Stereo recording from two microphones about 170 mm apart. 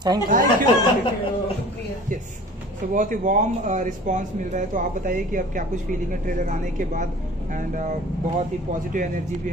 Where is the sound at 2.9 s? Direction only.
50° right (ahead or behind).